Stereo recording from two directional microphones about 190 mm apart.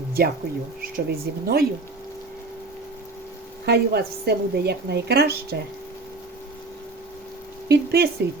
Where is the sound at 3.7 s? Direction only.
55° right (ahead or behind).